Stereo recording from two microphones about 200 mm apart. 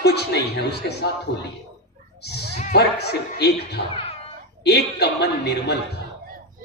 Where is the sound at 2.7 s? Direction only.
55° left (ahead or behind).